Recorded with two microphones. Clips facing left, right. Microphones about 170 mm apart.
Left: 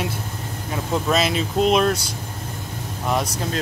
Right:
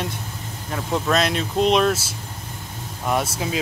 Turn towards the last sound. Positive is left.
turn(degrees=-5)  # may be behind; listen again after turning